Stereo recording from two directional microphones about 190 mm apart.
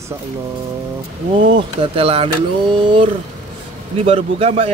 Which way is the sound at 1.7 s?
30° right (ahead or behind).